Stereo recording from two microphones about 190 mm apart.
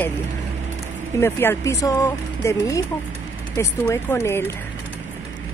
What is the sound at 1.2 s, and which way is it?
Speech, 10° left (ahead or behind).